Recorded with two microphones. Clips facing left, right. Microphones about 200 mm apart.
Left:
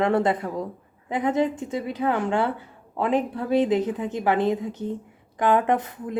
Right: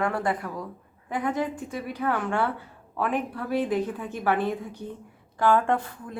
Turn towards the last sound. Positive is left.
turn(degrees=20)  # may be behind; listen again after turning